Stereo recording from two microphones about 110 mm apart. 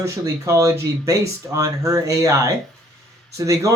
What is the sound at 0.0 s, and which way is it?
A man's voice, 25° right (ahead or behind).